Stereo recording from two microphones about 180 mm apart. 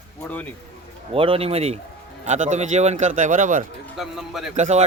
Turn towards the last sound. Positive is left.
turn(degrees=-40)  # may be behind; listen again after turning